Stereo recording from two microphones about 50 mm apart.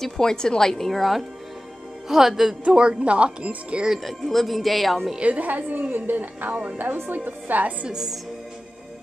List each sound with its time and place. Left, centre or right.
0.0 s a woman's voice: centre
2.6 s speech: right
3.9 s speech: centre
5.2 s a woman's voice: right
7.9 s speech: centre